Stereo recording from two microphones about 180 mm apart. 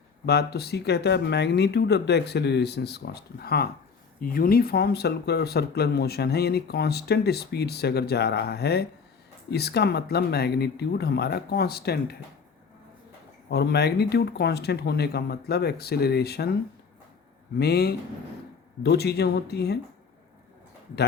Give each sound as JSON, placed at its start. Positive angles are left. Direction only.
{"t": 0.3, "sound": "speech", "side_deg": 65}
{"t": 13.5, "sound": "speech", "side_deg": 65}
{"t": 17.6, "sound": "speech", "side_deg": 65}